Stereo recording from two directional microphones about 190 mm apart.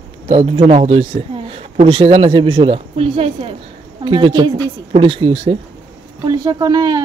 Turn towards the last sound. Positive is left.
turn(degrees=-20)  # may be behind; listen again after turning